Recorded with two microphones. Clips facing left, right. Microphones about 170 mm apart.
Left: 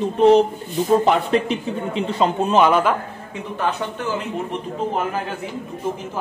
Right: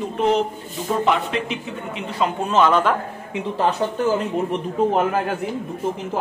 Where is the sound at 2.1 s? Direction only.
25° left (ahead or behind).